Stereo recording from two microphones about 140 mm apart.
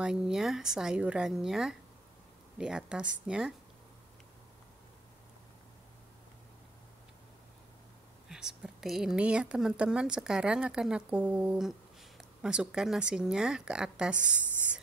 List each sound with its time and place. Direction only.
0.0 s a woman's voice: 5° right (ahead or behind)
8.3 s a woman's voice: 5° right (ahead or behind)